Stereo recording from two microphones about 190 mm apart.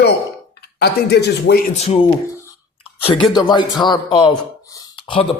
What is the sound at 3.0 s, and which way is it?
Speech, 25° left (ahead or behind).